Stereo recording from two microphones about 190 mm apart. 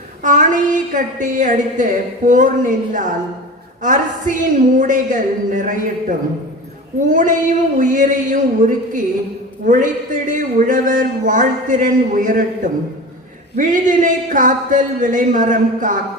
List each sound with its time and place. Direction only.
0.2 s a man's voice: 40° right (ahead or behind)